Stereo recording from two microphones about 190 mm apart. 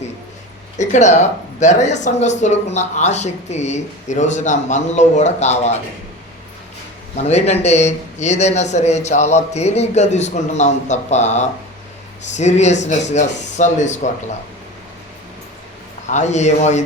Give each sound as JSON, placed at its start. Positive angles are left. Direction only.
{"t": 0.8, "sound": "speech", "side_deg": 40}
{"t": 7.2, "sound": "speech", "side_deg": 35}
{"t": 16.0, "sound": "speech", "side_deg": 40}